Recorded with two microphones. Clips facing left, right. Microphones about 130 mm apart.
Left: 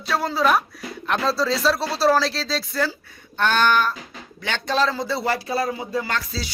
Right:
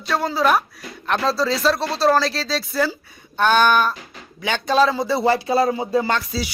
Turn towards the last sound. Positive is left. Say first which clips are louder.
# right 5 dB
turn(degrees=-25)  # may be behind; listen again after turning